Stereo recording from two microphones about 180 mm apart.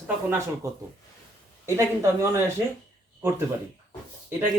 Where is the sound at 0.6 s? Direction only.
20° right (ahead or behind).